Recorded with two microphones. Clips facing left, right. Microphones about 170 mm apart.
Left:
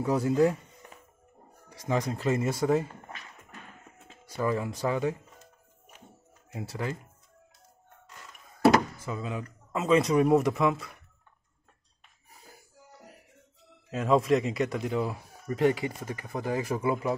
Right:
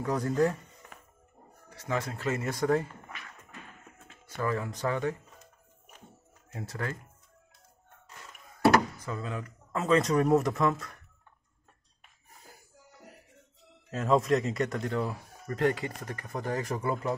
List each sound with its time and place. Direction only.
0.0 s speech: 10° left (ahead or behind)
1.8 s speech: 15° left (ahead or behind)
4.4 s speech: 15° left (ahead or behind)
6.5 s speech: 10° left (ahead or behind)
9.0 s speech: 10° left (ahead or behind)
13.9 s speech: centre (ahead or behind)